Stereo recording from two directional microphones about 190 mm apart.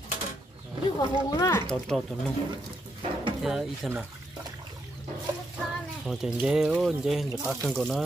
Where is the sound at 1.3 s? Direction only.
15° left (ahead or behind).